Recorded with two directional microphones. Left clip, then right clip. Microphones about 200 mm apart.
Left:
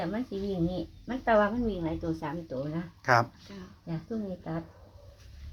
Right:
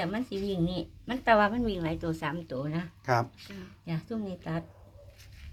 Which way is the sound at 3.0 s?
Centre (ahead or behind).